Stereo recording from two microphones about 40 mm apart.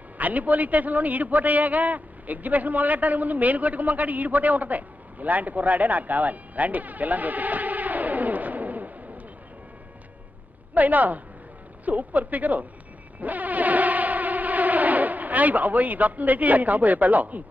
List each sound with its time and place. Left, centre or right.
0.2 s a man's voice: right
10.7 s a woman's voice: right
13.2 s cacophony: right